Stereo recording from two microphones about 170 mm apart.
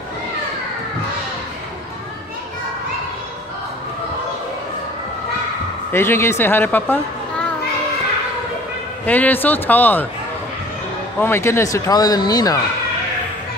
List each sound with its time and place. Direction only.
5.9 s speech: 15° left (ahead or behind)
9.0 s a man's voice: 10° left (ahead or behind)
11.1 s speech: 15° left (ahead or behind)